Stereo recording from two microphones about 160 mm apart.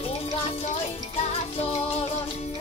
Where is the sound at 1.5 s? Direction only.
40° left (ahead or behind).